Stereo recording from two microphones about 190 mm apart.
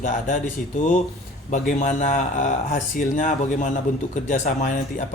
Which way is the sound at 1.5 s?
40° left (ahead or behind).